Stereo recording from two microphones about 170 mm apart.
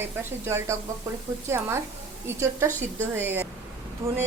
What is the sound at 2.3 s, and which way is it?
A woman's voice, 15° right (ahead or behind).